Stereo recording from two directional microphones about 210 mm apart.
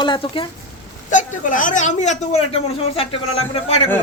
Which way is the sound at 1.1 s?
40° left (ahead or behind).